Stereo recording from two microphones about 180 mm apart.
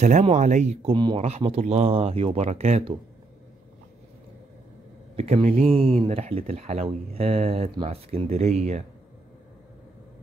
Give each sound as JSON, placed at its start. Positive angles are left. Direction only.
{"t": 0.0, "sound": "speech", "side_deg": -40}
{"t": 0.9, "sound": "speech", "side_deg": -30}
{"t": 5.1, "sound": "speech", "side_deg": -35}